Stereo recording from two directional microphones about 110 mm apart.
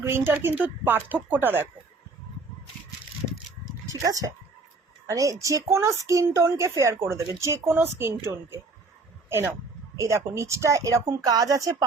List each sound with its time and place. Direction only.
0.0 s a woman's voice: 25° right (ahead or behind)
4.0 s a woman's voice: 35° right (ahead or behind)
10.0 s a woman's voice: 25° right (ahead or behind)